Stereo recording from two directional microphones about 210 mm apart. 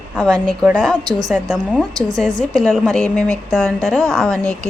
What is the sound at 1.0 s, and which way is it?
Speech, 20° right (ahead or behind).